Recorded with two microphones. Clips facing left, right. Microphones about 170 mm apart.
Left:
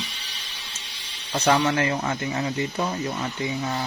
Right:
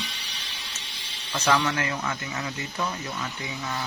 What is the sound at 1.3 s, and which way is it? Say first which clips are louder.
Speech: left 3 dB; 35° left (ahead or behind).